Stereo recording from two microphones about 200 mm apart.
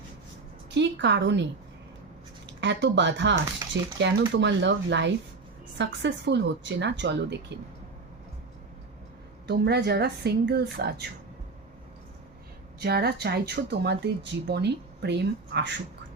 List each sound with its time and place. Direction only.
0.7 s speech: 60° right (ahead or behind)
2.6 s speech: 60° right (ahead or behind)
3.7 s cutlery: 65° right (ahead or behind)
4.4 s speech: 60° right (ahead or behind)
9.5 s speech: 55° right (ahead or behind)
12.8 s a woman's voice: 50° right (ahead or behind)